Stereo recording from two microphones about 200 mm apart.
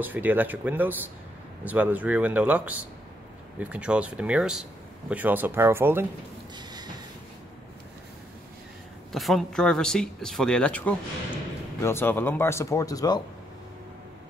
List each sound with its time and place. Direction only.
0.0 s speech: 10° right (ahead or behind)
6.5 s a sound: 20° right (ahead or behind)
9.1 s speech: centre (ahead or behind); by 13.2 s 20° left (ahead or behind)